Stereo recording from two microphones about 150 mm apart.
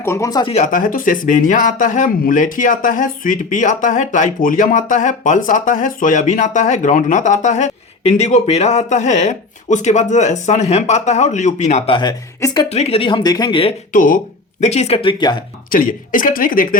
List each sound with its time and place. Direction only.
0.0 s speech: 20° left (ahead or behind)
0.4 s speech: 50° left (ahead or behind)
11.9 s speech: 30° left (ahead or behind)
12.6 s speech: 45° left (ahead or behind)
13.9 s speech: 65° left (ahead or behind)
14.6 s speech: 50° left (ahead or behind); by 15.4 s 30° left (ahead or behind)
15.7 s speech: 70° left (ahead or behind)